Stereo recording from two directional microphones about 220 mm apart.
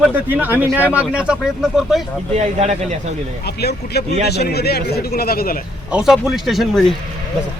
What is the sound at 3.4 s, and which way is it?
Speech, 45° left (ahead or behind).